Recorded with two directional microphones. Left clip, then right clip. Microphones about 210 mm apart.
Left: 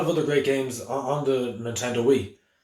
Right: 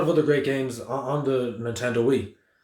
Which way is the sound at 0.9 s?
50° right (ahead or behind).